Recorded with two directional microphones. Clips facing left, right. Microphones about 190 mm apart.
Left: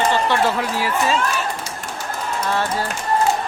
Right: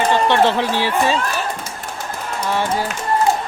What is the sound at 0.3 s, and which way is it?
Speech, 25° right (ahead or behind).